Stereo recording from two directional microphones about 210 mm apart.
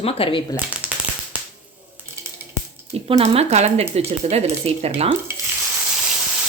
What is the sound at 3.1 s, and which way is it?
Speech, 30° right (ahead or behind).